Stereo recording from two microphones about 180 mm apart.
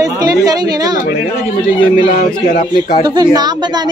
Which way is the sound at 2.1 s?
45° left (ahead or behind).